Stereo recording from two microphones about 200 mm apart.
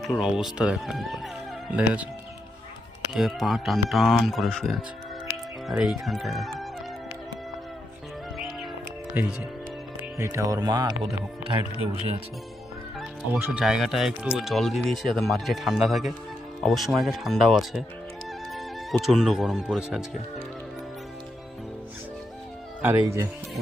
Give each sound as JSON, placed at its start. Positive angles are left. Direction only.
{"t": 0.0, "sound": "speech", "side_deg": 0}
{"t": 3.1, "sound": "speech", "side_deg": 0}
{"t": 10.0, "sound": "speech", "side_deg": -15}
{"t": 13.0, "sound": "speech", "side_deg": -5}
{"t": 22.8, "sound": "speech", "side_deg": -10}